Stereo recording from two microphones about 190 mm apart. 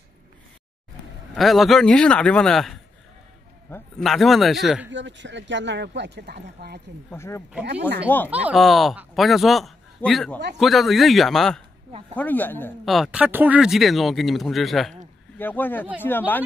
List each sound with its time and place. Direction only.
1.3 s speech: centre (ahead or behind)
4.0 s speech: centre (ahead or behind)
4.9 s speech: 75° right (ahead or behind)
7.1 s speech: 15° left (ahead or behind)
8.3 s speech: 5° right (ahead or behind); by 12.7 s 10° left (ahead or behind)
12.8 s speech: centre (ahead or behind)